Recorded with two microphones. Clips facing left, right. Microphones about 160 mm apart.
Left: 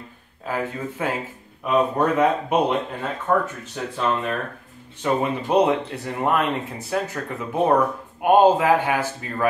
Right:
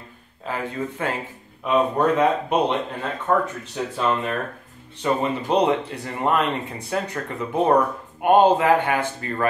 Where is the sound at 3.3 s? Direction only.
5° right (ahead or behind).